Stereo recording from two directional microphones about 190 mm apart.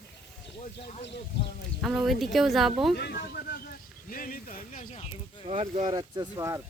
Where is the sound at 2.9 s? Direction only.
55° left (ahead or behind); by 5.1 s 40° left (ahead or behind).